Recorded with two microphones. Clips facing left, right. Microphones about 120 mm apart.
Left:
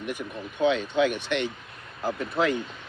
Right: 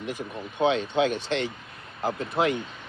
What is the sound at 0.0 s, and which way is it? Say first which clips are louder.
Speech: even; 25° right (ahead or behind).